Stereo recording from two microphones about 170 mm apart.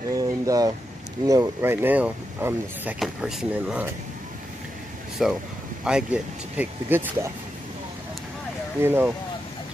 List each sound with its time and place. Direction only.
0.2 s a sound: 20° right (ahead or behind)
1.2 s speech: 20° right (ahead or behind)
5.2 s speech: centre (ahead or behind)
8.8 s speech: 10° right (ahead or behind)